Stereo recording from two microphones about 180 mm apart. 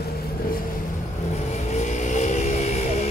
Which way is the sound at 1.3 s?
40° left (ahead or behind).